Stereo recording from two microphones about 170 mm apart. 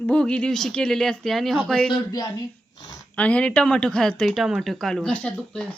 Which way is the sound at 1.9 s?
25° left (ahead or behind).